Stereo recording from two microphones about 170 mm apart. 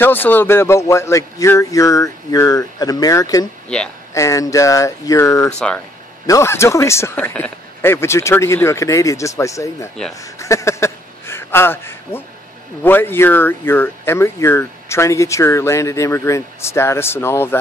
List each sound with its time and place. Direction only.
0.0 s speech: 10° left (ahead or behind)
3.6 s speech: 5° left (ahead or behind)
4.1 s speech: 20° left (ahead or behind)
5.5 s speech: 5° left (ahead or behind)
6.2 s speech: 15° left (ahead or behind)
10.2 s a sound: 20° left (ahead or behind)
12.8 s speech: 10° left (ahead or behind)